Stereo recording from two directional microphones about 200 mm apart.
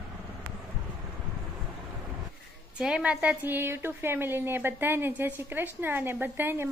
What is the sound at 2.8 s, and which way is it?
A woman's voice, 5° right (ahead or behind).